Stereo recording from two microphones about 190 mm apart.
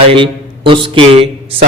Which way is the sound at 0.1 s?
25° right (ahead or behind).